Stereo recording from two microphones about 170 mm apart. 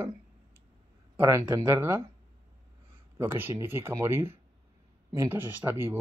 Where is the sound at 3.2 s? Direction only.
15° right (ahead or behind).